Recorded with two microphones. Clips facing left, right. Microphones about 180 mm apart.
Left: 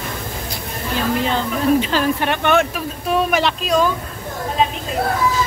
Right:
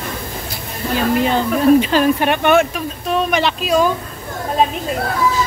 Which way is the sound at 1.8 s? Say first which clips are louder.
Right 4 dB; 15° right (ahead or behind).